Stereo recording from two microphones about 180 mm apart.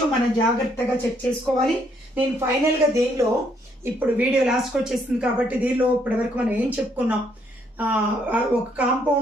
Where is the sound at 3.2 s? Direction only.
15° right (ahead or behind).